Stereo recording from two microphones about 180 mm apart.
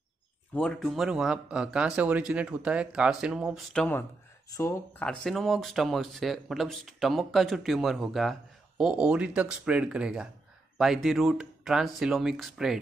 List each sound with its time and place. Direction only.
0.6 s speech: centre (ahead or behind)
5.0 s speech: centre (ahead or behind)